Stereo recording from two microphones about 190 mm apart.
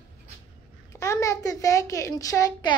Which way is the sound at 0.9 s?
15° left (ahead or behind).